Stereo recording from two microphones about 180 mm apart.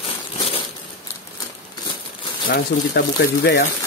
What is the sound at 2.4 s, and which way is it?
Speech, 65° left (ahead or behind).